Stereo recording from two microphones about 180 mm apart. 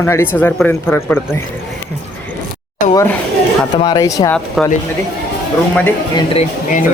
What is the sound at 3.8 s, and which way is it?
Speech, 20° left (ahead or behind).